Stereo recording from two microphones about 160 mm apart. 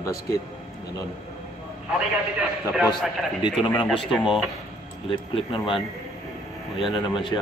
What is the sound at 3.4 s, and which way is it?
Speech, 30° left (ahead or behind).